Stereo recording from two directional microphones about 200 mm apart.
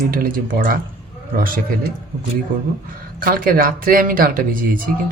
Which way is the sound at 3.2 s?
45° right (ahead or behind).